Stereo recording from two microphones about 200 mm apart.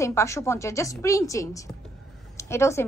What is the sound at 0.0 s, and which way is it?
A woman's voice, 15° left (ahead or behind).